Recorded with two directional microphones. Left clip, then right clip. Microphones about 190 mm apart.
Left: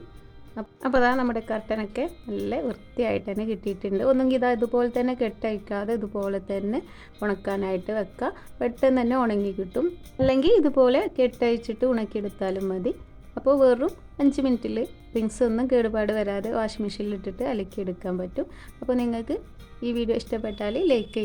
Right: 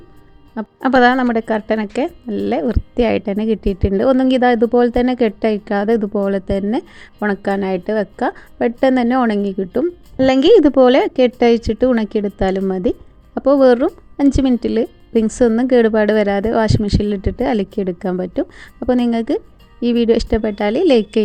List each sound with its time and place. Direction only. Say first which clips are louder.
0.5 s a woman's voice: right 9 dB; 30° right (ahead or behind)